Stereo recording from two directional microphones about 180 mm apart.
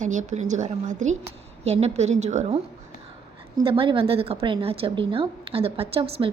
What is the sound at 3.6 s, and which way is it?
A woman's voice, 30° right (ahead or behind).